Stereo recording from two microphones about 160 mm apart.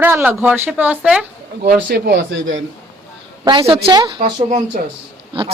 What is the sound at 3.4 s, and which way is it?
Speech, 30° right (ahead or behind).